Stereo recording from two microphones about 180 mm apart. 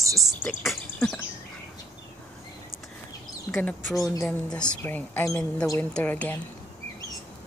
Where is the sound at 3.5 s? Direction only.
15° left (ahead or behind).